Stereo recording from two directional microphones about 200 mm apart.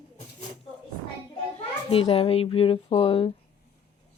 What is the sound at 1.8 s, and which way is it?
Speech, 30° left (ahead or behind).